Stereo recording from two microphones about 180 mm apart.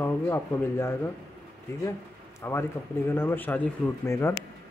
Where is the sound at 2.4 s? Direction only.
15° left (ahead or behind).